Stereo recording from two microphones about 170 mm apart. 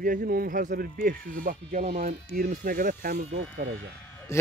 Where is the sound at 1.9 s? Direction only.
55° right (ahead or behind).